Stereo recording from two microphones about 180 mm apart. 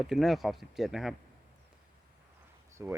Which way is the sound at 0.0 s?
Centre (ahead or behind).